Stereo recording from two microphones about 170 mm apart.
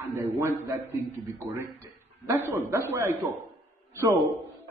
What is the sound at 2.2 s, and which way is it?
Speech, 15° right (ahead or behind).